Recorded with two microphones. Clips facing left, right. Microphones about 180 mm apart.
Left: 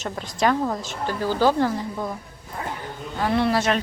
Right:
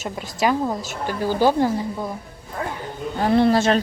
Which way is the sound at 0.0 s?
10° right (ahead or behind).